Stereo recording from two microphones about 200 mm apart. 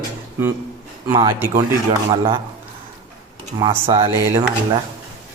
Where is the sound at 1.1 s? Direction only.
15° right (ahead or behind).